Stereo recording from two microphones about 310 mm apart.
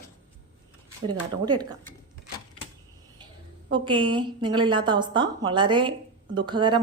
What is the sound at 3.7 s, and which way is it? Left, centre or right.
A woman's voice, centre.